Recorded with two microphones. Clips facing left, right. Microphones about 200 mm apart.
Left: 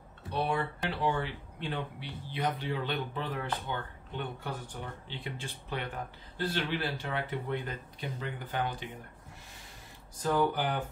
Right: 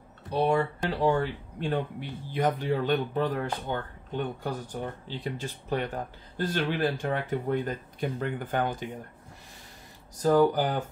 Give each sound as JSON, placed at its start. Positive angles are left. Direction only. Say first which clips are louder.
{"t": 0.3, "sound": "speech", "louder": "right 7 dB", "side_deg": -40}
{"t": 10.1, "sound": "speech", "louder": "right 7 dB", "side_deg": -40}